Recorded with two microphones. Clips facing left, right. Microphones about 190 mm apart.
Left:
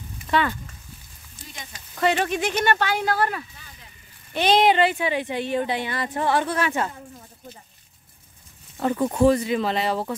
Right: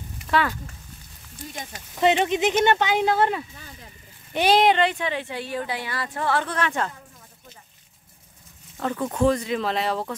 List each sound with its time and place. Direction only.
0.3 s speech: centre (ahead or behind)
1.5 s speech: 45° right (ahead or behind)
2.0 s speech: 20° right (ahead or behind)
4.3 s speech: 10° right (ahead or behind)
4.6 s a woman's voice: 5° left (ahead or behind)
8.7 s a woman's voice: 15° left (ahead or behind)